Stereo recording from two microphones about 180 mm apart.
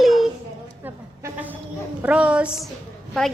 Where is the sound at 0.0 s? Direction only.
Centre (ahead or behind).